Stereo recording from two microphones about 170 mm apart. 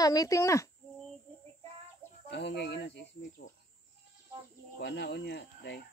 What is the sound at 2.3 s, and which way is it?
Speech, 80° left.